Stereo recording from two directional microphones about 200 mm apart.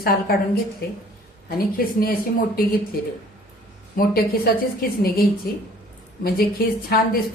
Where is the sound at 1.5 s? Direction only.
45° left (ahead or behind).